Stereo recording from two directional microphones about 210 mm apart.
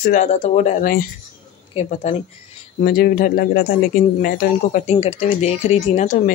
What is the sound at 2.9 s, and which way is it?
Speech, 45° left (ahead or behind).